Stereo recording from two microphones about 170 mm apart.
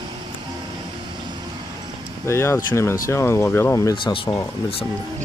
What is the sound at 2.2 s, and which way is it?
Speech, 15° left (ahead or behind).